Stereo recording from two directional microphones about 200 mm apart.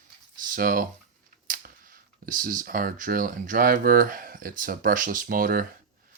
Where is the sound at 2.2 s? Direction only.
45° right (ahead or behind).